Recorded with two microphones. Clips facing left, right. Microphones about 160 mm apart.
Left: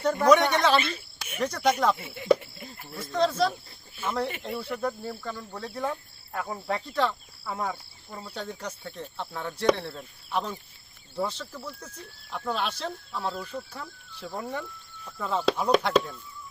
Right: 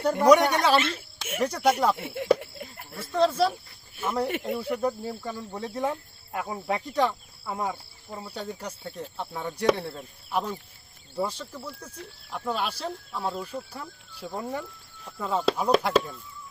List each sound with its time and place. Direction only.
0.0 s speech: 10° right (ahead or behind)
0.8 s a woman's voice: 80° right
1.4 s speech: 10° right (ahead or behind)
2.0 s speech: 60° right (ahead or behind)
2.4 s a sound: 60° right (ahead or behind)
3.0 s speech: 5° right (ahead or behind)
9.6 s speech: 5° right (ahead or behind)